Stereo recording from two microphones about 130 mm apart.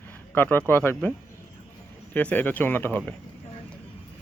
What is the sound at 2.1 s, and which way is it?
Speech, 10° left (ahead or behind).